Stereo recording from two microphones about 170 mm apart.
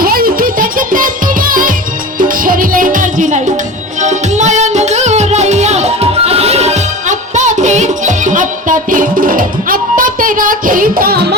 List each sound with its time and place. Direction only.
0.0 s music: 60° right (ahead or behind)